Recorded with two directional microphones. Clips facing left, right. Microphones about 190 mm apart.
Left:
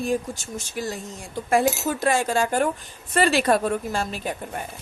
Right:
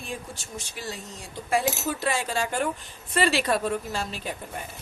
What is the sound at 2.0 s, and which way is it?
A woman's voice, 45° left (ahead or behind).